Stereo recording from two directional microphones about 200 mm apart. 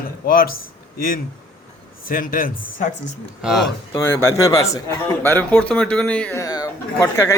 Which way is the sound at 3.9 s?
15° left (ahead or behind).